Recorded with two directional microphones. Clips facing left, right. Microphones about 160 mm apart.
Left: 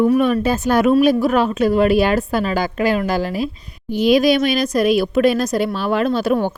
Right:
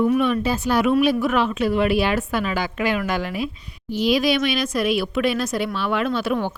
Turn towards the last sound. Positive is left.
turn(degrees=40)  # may be behind; listen again after turning